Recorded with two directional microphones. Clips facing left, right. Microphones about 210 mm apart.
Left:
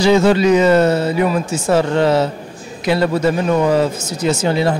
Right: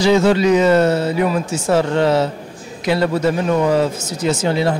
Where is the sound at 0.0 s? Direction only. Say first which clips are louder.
Left 1 dB; 15° left (ahead or behind).